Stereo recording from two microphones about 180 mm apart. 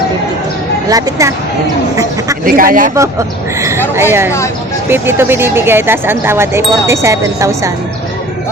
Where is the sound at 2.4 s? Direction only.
50° right (ahead or behind).